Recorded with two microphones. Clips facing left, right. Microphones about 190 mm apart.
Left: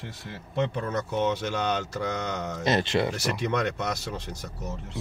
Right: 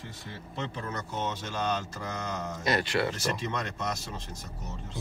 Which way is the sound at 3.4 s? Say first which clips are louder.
Left 7 dB; 70° left (ahead or behind).